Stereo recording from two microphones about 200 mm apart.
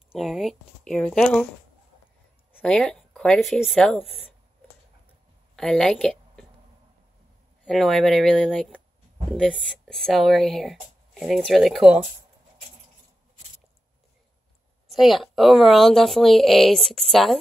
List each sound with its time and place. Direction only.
0.1 s speech: centre (ahead or behind)
2.6 s speech: 5° left (ahead or behind)
5.6 s a woman's voice: 5° left (ahead or behind)
7.6 s speech: centre (ahead or behind)
14.9 s speech: centre (ahead or behind)